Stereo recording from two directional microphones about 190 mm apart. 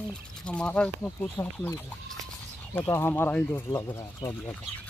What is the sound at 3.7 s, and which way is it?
Speech, 20° left (ahead or behind).